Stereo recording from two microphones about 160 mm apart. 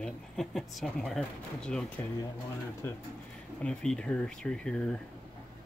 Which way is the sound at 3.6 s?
5° left (ahead or behind).